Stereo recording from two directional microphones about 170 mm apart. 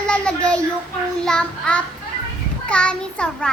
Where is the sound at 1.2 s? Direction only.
5° left (ahead or behind).